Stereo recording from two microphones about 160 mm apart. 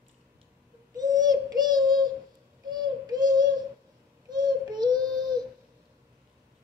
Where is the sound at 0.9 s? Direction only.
25° right (ahead or behind).